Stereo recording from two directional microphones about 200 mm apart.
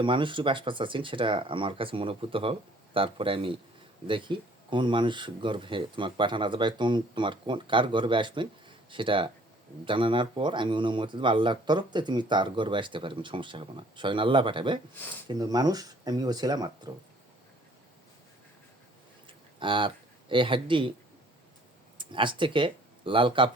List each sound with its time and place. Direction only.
0.0 s speech: 25° right (ahead or behind)
19.5 s speech: 25° right (ahead or behind)
21.9 s speech: 25° right (ahead or behind)